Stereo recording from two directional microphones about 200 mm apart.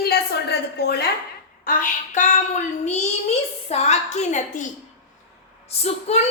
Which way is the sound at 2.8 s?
35° left (ahead or behind).